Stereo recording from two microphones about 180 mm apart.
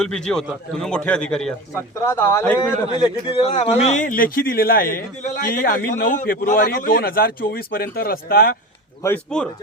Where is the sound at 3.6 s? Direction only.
35° left (ahead or behind); by 8.6 s 55° left (ahead or behind).